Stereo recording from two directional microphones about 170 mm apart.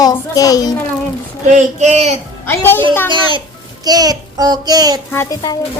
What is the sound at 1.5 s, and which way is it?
Child singing, 45° right (ahead or behind).